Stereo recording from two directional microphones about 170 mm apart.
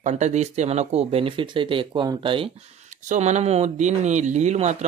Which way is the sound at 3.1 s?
40° right (ahead or behind).